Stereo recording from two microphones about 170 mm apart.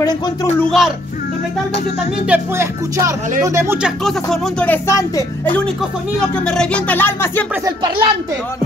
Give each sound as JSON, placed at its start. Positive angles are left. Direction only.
{"t": 0.6, "sound": "speech", "side_deg": 0}
{"t": 2.2, "sound": "speech", "side_deg": -10}
{"t": 6.4, "sound": "speech", "side_deg": 5}
{"t": 7.6, "sound": "speech", "side_deg": -25}